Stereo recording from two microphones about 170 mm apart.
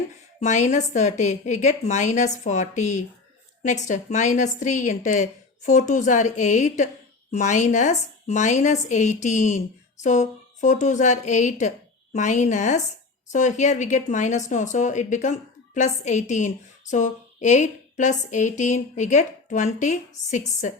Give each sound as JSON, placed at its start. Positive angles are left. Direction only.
{"t": 0.3, "sound": "a woman's voice", "side_deg": 40}